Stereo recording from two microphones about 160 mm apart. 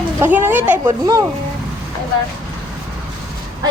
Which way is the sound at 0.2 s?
15° right (ahead or behind).